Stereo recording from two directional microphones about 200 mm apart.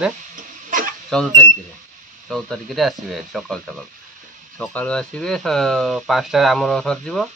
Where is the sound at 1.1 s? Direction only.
5° left (ahead or behind).